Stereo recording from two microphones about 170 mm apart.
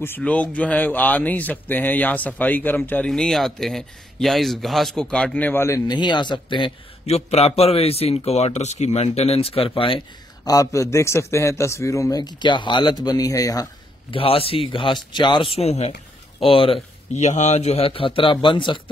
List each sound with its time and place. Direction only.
0.0 s speech: 10° left (ahead or behind)
14.1 s a man's voice: 35° left (ahead or behind)